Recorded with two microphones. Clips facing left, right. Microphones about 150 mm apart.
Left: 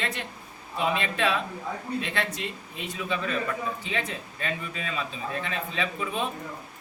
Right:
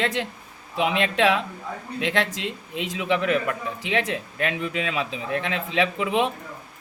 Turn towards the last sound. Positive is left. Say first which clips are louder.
# right 7 dB
turn(degrees=-90)